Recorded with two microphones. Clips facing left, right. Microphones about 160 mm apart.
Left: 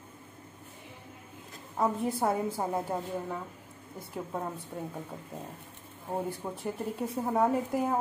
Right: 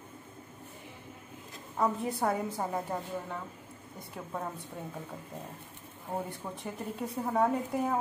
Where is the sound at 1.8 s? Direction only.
Centre (ahead or behind).